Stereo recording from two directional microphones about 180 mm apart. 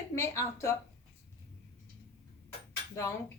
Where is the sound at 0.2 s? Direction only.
15° left (ahead or behind).